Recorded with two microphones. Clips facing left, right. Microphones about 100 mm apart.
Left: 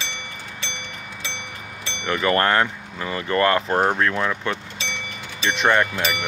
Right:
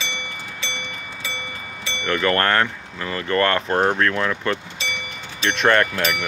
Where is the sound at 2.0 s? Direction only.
15° left (ahead or behind).